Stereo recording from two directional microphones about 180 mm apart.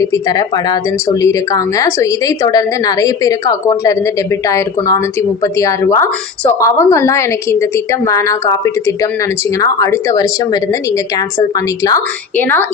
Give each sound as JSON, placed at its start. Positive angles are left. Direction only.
{"t": 0.0, "sound": "a woman's voice", "side_deg": 20}
{"t": 11.9, "sound": "a woman's voice", "side_deg": 15}